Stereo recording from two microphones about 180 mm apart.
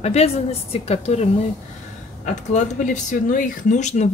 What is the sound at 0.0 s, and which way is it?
A woman's voice, 35° left (ahead or behind).